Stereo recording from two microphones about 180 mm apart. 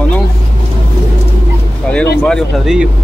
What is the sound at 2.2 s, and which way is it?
Speech, centre (ahead or behind).